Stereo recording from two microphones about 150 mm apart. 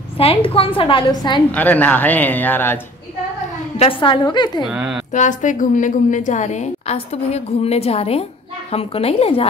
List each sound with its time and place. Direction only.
0.2 s a woman's voice: 40° left (ahead or behind)
1.5 s speech: 10° left (ahead or behind)
3.7 s a woman's voice: 40° left (ahead or behind)
4.6 s speech: 5° right (ahead or behind)
5.1 s a woman's voice: 55° left (ahead or behind)